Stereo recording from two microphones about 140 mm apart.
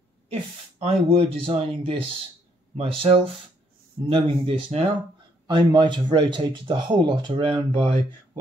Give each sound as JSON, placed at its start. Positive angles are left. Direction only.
{"t": 0.3, "sound": "speech", "side_deg": -45}